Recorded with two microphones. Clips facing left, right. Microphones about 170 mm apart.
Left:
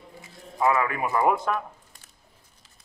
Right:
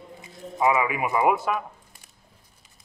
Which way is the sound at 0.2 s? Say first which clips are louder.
Right 1 dB; 20° right (ahead or behind).